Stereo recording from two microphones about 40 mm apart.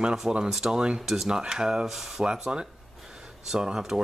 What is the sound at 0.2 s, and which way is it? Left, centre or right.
Speech, centre.